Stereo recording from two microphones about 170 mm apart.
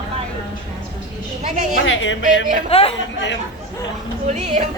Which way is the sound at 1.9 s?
90° left.